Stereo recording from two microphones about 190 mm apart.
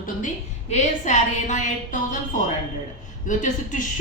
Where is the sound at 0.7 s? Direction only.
40° left (ahead or behind).